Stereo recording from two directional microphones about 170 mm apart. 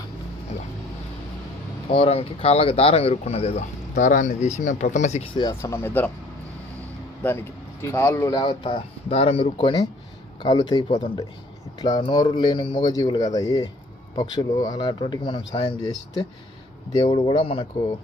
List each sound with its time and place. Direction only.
1.9 s speech: 35° left (ahead or behind)
5.3 s speech: 25° left (ahead or behind)
7.8 s speech: 15° left (ahead or behind)
16.9 s speech: 30° left (ahead or behind)